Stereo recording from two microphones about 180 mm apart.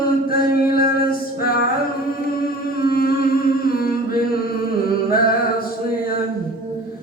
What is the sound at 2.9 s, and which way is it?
Music, 55° left (ahead or behind).